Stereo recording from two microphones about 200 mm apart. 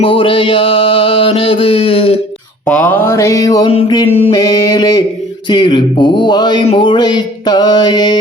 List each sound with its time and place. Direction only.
0.0 s speech: 25° left (ahead or behind)
2.6 s speech: 5° left (ahead or behind)